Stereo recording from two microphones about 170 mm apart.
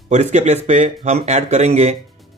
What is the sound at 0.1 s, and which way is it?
Speech, 40° right (ahead or behind).